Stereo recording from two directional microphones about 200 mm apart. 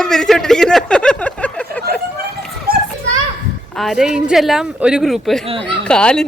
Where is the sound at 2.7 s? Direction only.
45° right (ahead or behind).